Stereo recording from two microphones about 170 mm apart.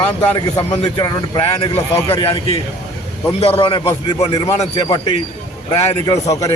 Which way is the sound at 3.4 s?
35° left (ahead or behind).